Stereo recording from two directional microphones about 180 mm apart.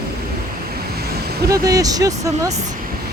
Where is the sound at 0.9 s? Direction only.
60° right (ahead or behind).